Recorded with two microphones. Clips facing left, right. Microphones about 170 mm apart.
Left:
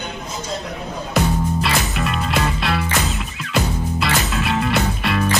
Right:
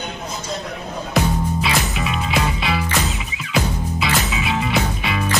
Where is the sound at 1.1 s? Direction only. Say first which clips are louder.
Left 1 dB; centre (ahead or behind).